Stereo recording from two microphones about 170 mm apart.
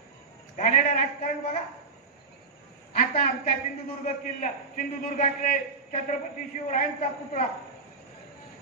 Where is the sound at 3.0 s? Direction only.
50° left (ahead or behind).